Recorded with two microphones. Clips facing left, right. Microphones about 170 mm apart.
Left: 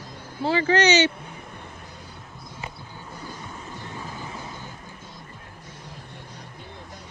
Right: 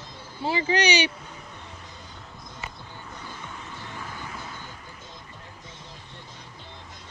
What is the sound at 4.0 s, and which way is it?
Vehicle, 20° left (ahead or behind).